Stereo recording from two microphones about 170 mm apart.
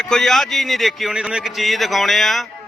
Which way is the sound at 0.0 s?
Centre (ahead or behind).